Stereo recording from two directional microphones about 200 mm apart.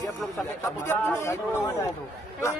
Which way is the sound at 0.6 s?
10° left (ahead or behind).